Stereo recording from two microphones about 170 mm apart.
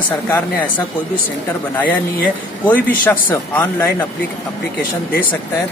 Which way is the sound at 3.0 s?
10° left (ahead or behind).